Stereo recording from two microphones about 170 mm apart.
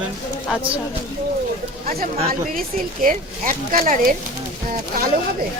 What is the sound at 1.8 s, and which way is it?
A woman's voice, 60° right (ahead or behind).